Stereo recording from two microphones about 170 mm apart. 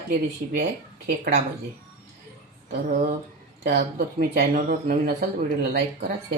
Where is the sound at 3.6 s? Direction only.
65° right (ahead or behind).